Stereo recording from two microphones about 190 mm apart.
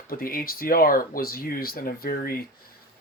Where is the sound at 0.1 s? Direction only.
50° left (ahead or behind).